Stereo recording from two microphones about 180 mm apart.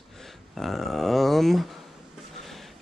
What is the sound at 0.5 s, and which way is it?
Speech, centre (ahead or behind).